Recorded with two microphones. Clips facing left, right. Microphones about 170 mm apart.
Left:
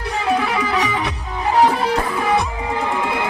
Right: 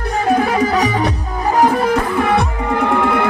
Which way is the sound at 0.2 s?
45° right (ahead or behind).